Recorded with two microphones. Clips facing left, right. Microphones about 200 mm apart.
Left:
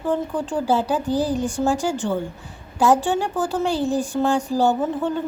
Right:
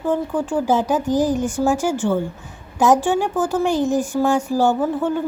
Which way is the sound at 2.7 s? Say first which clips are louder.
Right 2 dB; 15° right (ahead or behind).